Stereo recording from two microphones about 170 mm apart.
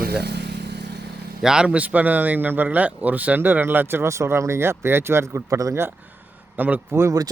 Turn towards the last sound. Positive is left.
turn(degrees=-20)  # may be behind; listen again after turning